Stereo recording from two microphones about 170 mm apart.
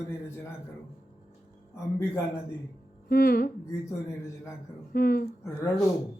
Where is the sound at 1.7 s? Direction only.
15° left (ahead or behind).